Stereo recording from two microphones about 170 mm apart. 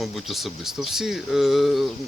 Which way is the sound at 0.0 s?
Centre (ahead or behind).